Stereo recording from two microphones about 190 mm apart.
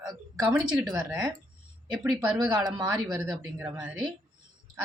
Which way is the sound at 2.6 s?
20° right (ahead or behind).